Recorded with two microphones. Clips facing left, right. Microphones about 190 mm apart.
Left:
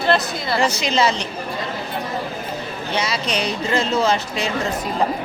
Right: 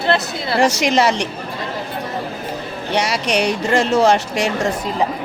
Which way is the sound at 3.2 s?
75° right (ahead or behind).